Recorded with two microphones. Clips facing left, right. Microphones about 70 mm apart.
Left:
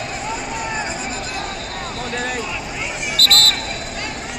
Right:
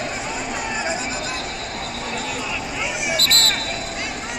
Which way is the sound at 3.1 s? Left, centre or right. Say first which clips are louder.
Left 5 dB; right.